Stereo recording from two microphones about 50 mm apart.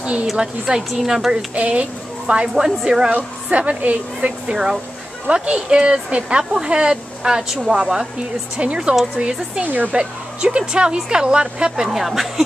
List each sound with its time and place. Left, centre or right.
0.0 s a woman's voice: right
0.4 s speech: centre
1.5 s speech: right
3.4 s a woman's voice: right
9.9 s speech: right
11.9 s speech: centre